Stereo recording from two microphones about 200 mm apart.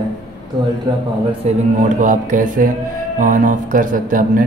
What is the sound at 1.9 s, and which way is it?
A man's voice, 40° right (ahead or behind).